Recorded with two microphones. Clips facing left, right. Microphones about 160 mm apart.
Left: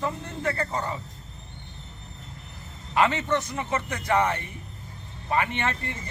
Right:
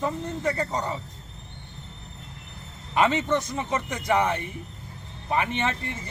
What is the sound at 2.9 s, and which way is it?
A man's voice, 20° right (ahead or behind).